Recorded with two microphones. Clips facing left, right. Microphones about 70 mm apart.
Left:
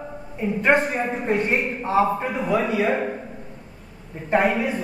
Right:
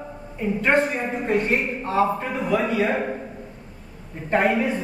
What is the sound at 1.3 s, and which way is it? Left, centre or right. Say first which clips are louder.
Speech: right 1 dB; left.